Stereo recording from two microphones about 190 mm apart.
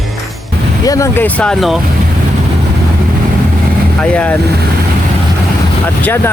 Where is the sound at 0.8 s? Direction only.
15° left (ahead or behind).